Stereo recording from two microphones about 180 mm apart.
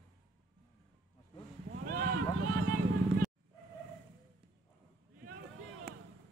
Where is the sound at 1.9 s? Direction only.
55° right (ahead or behind).